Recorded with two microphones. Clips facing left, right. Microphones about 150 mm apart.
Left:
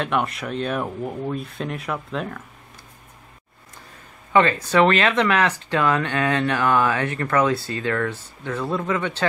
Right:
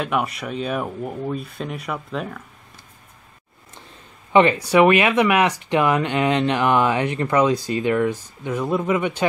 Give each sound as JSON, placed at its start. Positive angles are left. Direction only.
{"t": 0.0, "sound": "speech", "side_deg": -5}
{"t": 4.3, "sound": "speech", "side_deg": -20}